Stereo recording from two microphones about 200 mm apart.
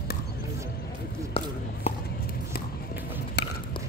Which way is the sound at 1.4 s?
25° left (ahead or behind).